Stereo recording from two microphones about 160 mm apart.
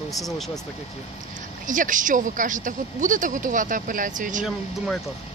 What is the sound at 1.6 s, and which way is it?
Speech, 55° right (ahead or behind).